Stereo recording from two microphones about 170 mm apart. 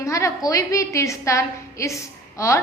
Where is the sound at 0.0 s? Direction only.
20° left (ahead or behind).